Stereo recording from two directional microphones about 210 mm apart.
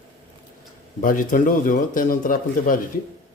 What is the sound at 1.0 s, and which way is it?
A man's voice, 40° left (ahead or behind).